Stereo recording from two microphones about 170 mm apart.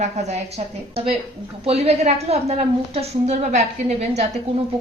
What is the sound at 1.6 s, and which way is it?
Speech, 35° right (ahead or behind).